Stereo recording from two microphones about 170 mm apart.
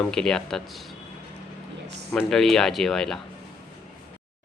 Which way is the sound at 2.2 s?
Centre (ahead or behind).